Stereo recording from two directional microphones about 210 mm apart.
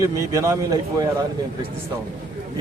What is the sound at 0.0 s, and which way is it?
Speech, 15° right (ahead or behind).